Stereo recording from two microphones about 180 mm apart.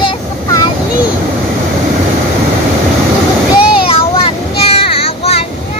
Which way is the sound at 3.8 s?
30° left (ahead or behind).